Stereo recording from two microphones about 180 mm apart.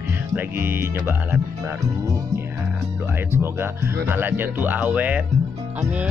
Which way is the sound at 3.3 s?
15° right (ahead or behind).